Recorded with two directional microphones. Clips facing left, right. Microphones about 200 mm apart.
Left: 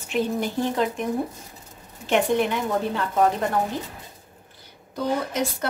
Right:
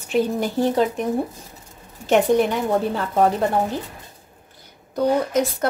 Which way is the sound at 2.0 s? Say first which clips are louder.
Right 5 dB; 40° right (ahead or behind).